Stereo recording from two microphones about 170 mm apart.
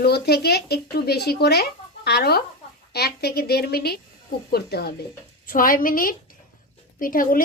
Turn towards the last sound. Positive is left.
turn(degrees=55)  # may be behind; listen again after turning